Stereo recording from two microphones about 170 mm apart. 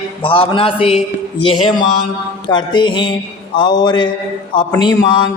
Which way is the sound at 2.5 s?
25° left (ahead or behind).